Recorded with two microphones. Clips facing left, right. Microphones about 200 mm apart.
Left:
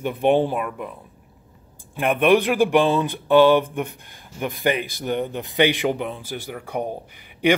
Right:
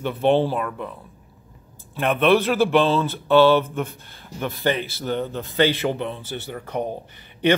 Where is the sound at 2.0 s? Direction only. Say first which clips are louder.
Left 1 dB; 10° left (ahead or behind).